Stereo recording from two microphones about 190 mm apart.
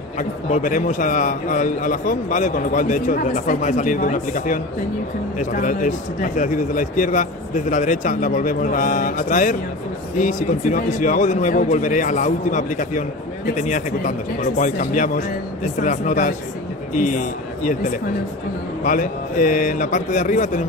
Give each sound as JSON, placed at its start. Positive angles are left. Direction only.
{"t": 0.2, "sound": "a man's voice", "side_deg": 40}